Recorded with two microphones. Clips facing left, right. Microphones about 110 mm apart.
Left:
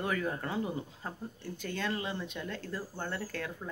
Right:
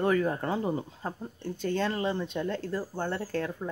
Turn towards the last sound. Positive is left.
turn(degrees=-35)  # may be behind; listen again after turning